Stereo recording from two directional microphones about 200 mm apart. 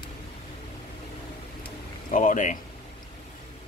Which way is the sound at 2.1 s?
40° left (ahead or behind).